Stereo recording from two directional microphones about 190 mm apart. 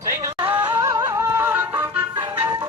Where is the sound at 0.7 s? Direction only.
15° right (ahead or behind).